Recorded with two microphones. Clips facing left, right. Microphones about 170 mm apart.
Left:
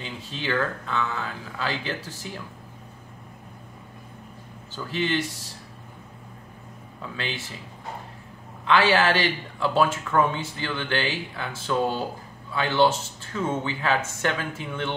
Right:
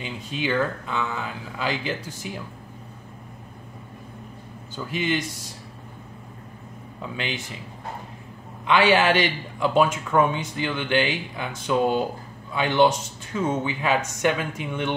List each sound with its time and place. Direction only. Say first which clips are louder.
0.0 s speech: right 4 dB; 15° right (ahead or behind)
4.7 s speech: even; 15° right (ahead or behind)
7.0 s speech: right 2 dB; 15° right (ahead or behind)
8.6 s speech: right 2 dB; 15° right (ahead or behind)